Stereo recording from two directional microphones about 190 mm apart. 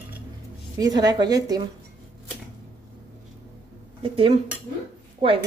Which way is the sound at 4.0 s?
30° right (ahead or behind).